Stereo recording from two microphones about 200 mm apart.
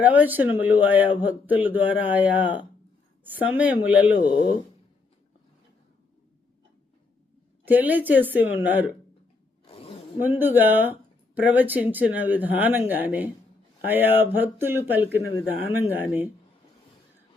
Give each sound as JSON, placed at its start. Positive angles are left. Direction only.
{"t": 0.0, "sound": "speech", "side_deg": -10}
{"t": 7.6, "sound": "speech", "side_deg": -10}
{"t": 9.6, "sound": "zipper", "side_deg": 30}
{"t": 10.2, "sound": "speech", "side_deg": -10}